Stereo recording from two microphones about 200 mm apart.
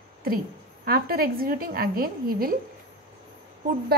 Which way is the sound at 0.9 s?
50° right (ahead or behind).